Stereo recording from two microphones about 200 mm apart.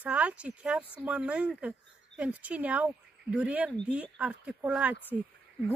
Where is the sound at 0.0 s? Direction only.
5° right (ahead or behind).